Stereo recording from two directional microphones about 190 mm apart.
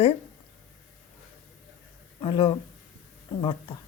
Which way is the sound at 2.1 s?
25° left (ahead or behind).